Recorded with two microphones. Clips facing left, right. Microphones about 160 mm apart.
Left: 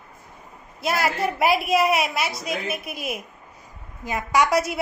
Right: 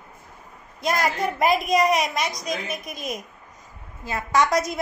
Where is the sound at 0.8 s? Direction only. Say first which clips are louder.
Even; 5° left (ahead or behind).